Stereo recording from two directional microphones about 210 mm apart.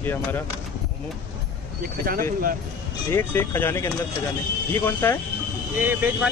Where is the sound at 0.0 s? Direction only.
10° left (ahead or behind).